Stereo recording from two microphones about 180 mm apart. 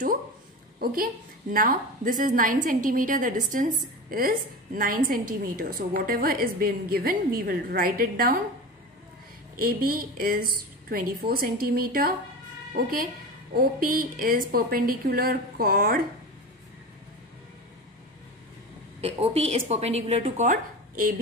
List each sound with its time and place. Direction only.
1.5 s a woman's voice: 50° right (ahead or behind)
9.6 s a woman's voice: 55° right (ahead or behind)
18.9 s a woman's voice: 35° right (ahead or behind)